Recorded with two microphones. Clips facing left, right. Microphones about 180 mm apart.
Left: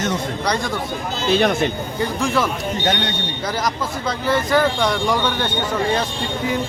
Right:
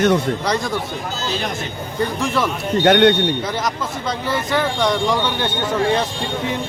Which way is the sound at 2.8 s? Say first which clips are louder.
Right 12 dB; 60° right (ahead or behind).